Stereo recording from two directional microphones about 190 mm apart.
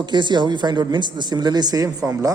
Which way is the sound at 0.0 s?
25° right (ahead or behind).